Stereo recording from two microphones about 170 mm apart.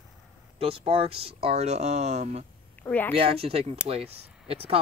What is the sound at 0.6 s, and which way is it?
Speech, 35° right (ahead or behind).